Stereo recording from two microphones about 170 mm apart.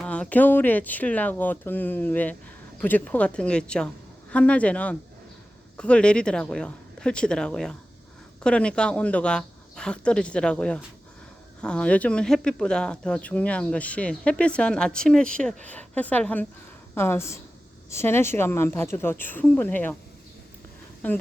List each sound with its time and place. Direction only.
0.0 s speech: 5° left (ahead or behind)
21.0 s speech: 10° left (ahead or behind)